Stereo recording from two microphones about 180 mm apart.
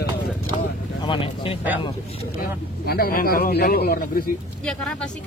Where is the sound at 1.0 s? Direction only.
30° left (ahead or behind).